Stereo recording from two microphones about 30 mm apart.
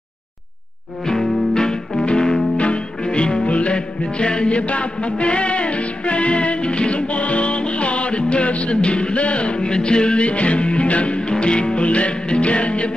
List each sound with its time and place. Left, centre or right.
1.0 s music: centre
2.5 s music: left